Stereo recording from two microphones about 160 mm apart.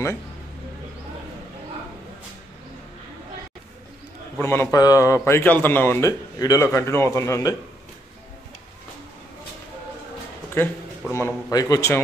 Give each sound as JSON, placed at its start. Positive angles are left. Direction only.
{"t": 4.4, "sound": "a man's voice", "side_deg": 15}
{"t": 10.5, "sound": "a man's voice", "side_deg": 15}